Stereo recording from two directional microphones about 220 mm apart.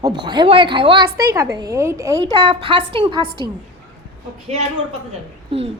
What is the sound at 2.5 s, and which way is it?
A woman's voice, 25° right (ahead or behind).